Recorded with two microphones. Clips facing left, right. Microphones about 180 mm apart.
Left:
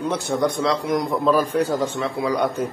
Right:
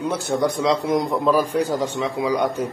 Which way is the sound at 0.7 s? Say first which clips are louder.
Right 2 dB; 25° right (ahead or behind).